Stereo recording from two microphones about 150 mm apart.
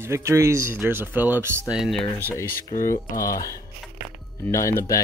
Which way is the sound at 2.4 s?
75° left (ahead or behind).